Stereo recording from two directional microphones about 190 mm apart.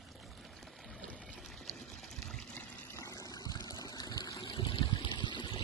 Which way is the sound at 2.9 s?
15° left (ahead or behind).